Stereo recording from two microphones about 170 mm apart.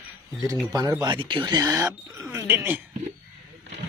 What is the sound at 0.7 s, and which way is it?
Speech, 20° right (ahead or behind).